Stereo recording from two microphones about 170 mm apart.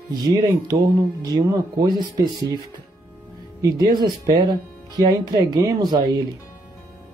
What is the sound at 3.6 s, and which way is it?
Speech, 25° right (ahead or behind).